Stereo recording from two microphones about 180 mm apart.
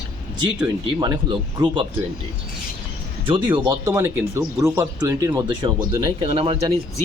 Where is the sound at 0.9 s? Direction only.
25° right (ahead or behind).